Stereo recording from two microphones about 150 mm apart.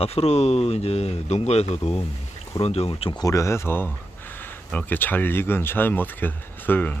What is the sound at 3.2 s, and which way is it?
Speech, 20° left (ahead or behind).